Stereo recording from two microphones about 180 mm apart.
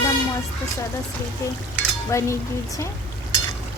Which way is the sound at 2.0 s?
15° left (ahead or behind).